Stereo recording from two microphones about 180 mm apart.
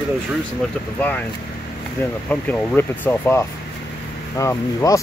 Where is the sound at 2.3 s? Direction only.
10° left (ahead or behind).